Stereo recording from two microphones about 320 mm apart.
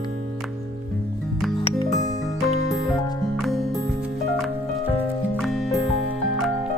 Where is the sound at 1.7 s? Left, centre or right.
Centre.